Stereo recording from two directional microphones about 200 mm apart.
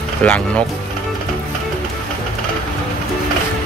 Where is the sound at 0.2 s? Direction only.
5° left (ahead or behind).